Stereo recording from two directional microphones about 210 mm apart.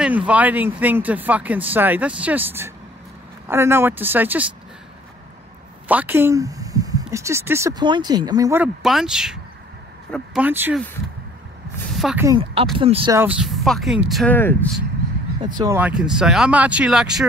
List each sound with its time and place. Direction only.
0.3 s speech: 5° right (ahead or behind)
5.9 s speech: 10° right (ahead or behind)
8.8 s speech: centre (ahead or behind)
11.9 s speech: centre (ahead or behind)
12.3 s speech: 25° right (ahead or behind)
13.1 s speech: 10° right (ahead or behind); by 14.6 s 10° left (ahead or behind)
15.4 s speech: 20° right (ahead or behind)